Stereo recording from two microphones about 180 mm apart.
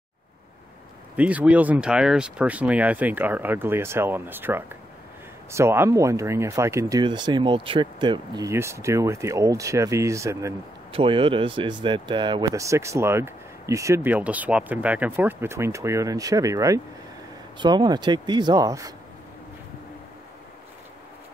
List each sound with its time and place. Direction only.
1.1 s speech: 5° right (ahead or behind)
10.9 s speech: 30° right (ahead or behind)